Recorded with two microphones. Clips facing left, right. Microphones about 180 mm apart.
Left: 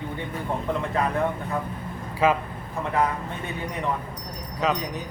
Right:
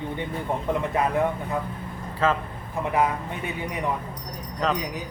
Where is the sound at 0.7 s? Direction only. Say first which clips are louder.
Right 2 dB; 15° right (ahead or behind).